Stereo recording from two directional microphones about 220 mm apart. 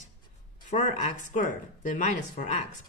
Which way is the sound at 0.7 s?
35° left (ahead or behind).